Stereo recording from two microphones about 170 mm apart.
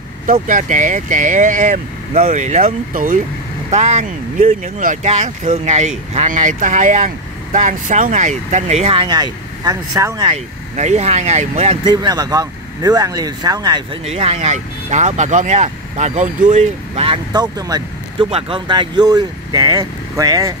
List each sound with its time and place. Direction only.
0.3 s speech: 50° right (ahead or behind)
3.7 s speech: 40° right (ahead or behind); by 10.3 s 25° right (ahead or behind)
10.3 s speech: 40° right (ahead or behind)
11.8 s speech: 25° right (ahead or behind)
14.0 s speech: 35° right (ahead or behind); by 20.5 s 20° right (ahead or behind)